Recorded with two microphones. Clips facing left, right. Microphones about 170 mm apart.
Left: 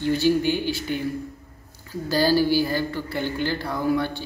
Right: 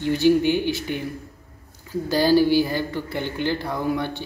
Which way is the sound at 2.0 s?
20° right (ahead or behind).